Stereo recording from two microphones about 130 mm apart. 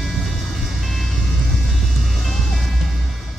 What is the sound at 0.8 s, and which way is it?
Music, centre (ahead or behind).